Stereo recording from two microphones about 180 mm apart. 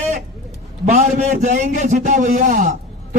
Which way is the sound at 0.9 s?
40° right (ahead or behind).